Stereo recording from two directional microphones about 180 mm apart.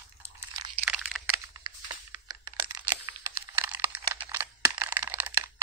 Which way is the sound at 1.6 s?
25° right (ahead or behind).